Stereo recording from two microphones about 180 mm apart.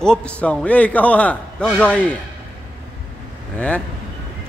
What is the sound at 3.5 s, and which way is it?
Speech, 5° left (ahead or behind).